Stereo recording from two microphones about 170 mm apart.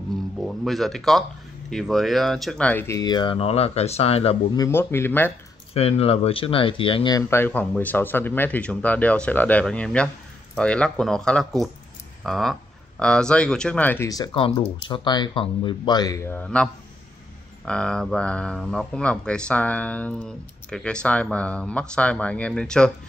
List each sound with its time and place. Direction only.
0.4 s speech: centre (ahead or behind); by 4.4 s 35° left (ahead or behind)
4.6 s speech: 15° left (ahead or behind)
5.8 s speech: 35° left (ahead or behind); by 16.6 s 10° left (ahead or behind)
17.6 s speech: 5° left (ahead or behind)